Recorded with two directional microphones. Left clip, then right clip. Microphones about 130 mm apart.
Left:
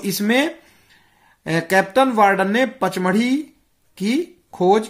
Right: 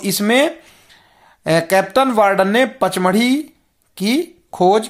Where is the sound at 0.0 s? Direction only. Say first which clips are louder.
Right 4 dB; 30° right (ahead or behind).